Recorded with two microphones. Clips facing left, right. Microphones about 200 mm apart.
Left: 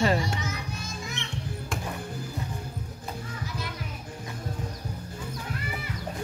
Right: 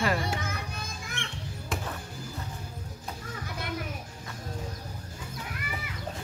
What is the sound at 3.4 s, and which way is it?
Music, 55° right (ahead or behind).